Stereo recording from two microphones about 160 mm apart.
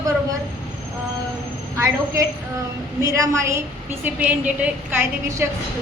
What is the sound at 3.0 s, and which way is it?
A woman's voice, 20° right (ahead or behind).